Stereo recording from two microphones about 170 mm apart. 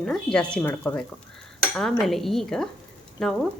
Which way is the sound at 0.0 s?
5° left (ahead or behind).